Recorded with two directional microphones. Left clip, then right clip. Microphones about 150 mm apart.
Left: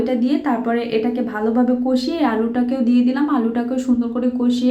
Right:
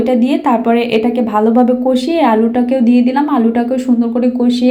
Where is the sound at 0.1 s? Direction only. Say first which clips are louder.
Right 7 dB; 20° right (ahead or behind).